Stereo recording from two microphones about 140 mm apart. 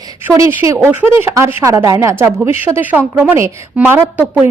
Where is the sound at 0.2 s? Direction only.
20° right (ahead or behind).